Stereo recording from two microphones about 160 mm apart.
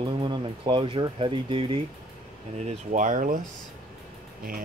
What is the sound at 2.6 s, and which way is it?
Speech, 55° right (ahead or behind).